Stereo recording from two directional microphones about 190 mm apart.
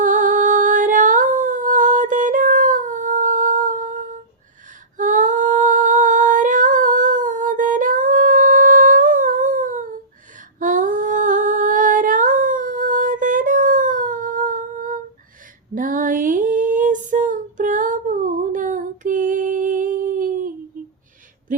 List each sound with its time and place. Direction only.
0.0 s humming: 45° right (ahead or behind)
15.7 s female singing: 45° right (ahead or behind)
20.8 s a sound: 45° right (ahead or behind)